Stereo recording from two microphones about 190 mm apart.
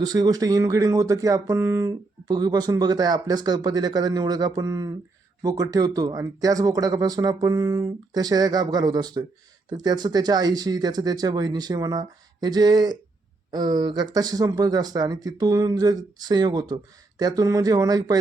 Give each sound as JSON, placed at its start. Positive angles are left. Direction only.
{"t": 0.0, "sound": "speech", "side_deg": -20}